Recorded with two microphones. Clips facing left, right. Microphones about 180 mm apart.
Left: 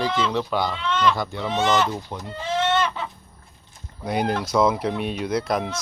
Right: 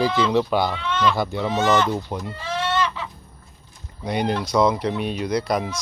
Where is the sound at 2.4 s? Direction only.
20° left (ahead or behind).